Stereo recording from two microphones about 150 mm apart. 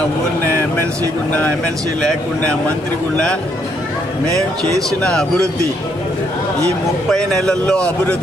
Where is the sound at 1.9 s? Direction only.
5° left (ahead or behind).